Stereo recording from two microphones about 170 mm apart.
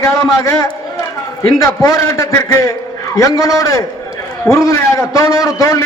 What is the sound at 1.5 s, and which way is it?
A man's voice, 20° left (ahead or behind).